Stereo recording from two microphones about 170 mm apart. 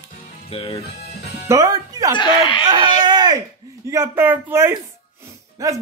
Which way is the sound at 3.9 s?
15° right (ahead or behind).